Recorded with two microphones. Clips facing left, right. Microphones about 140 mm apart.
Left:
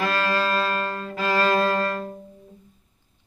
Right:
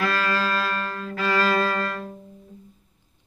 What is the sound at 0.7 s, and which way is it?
Music, 10° left (ahead or behind).